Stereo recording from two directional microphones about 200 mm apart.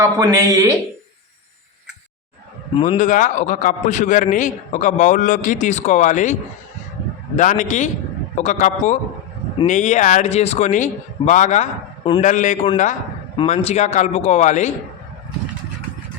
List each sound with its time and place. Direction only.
0.0 s speech: 15° right (ahead or behind)
2.7 s speech: 25° left (ahead or behind)
3.0 s a man's voice: 40° left (ahead or behind)
7.3 s a man's voice: 40° left (ahead or behind)
13.3 s a man's voice: 25° left (ahead or behind)